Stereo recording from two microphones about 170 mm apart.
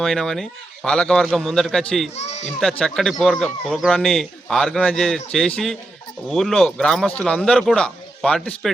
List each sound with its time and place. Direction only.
0.0 s speech: centre (ahead or behind)
2.1 s a child's voice: 40° left (ahead or behind)
2.6 s speech: 5° left (ahead or behind)